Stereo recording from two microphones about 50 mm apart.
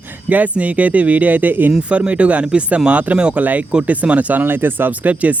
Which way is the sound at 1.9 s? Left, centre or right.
Right.